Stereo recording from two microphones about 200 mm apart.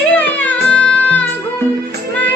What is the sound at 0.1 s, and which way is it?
Music, 5° left (ahead or behind).